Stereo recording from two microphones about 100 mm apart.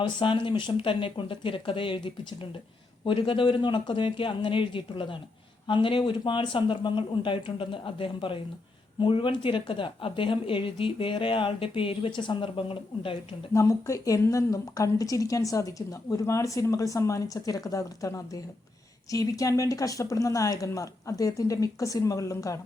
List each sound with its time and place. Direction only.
0.0 s a woman's voice: 50° left (ahead or behind)
13.5 s a woman's voice: 35° left (ahead or behind)